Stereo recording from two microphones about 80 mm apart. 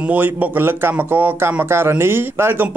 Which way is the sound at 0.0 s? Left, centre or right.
Right.